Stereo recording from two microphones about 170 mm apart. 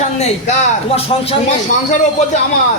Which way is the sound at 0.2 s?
35° left (ahead or behind).